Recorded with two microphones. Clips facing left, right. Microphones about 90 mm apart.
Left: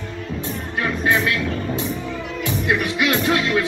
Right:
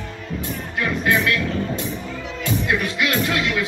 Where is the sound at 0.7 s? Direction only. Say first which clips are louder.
Even; 25° left (ahead or behind).